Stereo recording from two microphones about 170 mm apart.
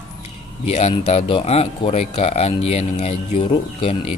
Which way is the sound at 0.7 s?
40° left (ahead or behind).